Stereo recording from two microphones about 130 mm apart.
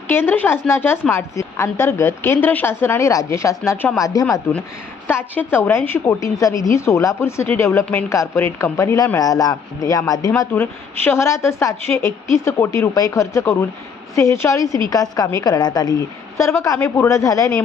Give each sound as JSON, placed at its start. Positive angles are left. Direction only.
{"t": 0.1, "sound": "a woman's voice", "side_deg": 15}
{"t": 3.9, "sound": "a woman's voice", "side_deg": 25}
{"t": 5.0, "sound": "a woman's voice", "side_deg": 15}
{"t": 10.5, "sound": "a woman's voice", "side_deg": 15}